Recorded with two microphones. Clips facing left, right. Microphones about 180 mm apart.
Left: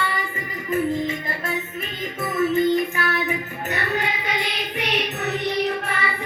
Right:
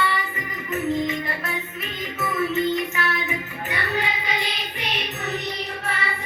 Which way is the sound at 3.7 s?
50° left (ahead or behind).